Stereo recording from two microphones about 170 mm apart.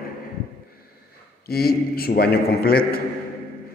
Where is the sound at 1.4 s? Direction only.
65° left (ahead or behind).